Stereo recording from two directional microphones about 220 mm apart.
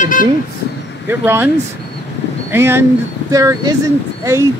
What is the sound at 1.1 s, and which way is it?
Speech, 10° right (ahead or behind).